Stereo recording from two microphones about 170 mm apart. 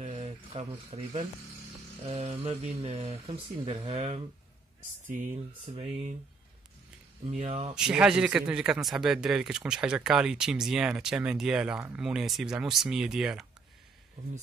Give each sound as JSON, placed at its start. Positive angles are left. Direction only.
{"t": 0.0, "sound": "a sound", "side_deg": -40}
{"t": 2.0, "sound": "speech", "side_deg": -40}
{"t": 5.3, "sound": "speech", "side_deg": -35}
{"t": 7.2, "sound": "speech", "side_deg": -35}
{"t": 7.7, "sound": "speech", "side_deg": -5}